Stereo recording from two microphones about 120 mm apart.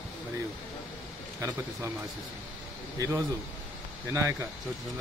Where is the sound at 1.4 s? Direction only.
25° right (ahead or behind).